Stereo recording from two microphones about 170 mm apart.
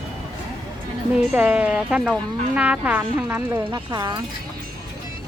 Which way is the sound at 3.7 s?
25° right (ahead or behind).